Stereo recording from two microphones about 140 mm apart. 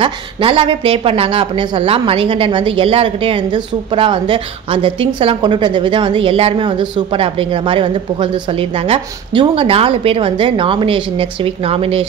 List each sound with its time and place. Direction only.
0.0 s a woman's voice: 40° right (ahead or behind)